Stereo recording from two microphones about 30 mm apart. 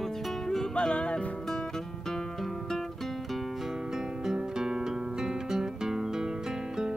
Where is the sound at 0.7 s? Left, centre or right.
Left.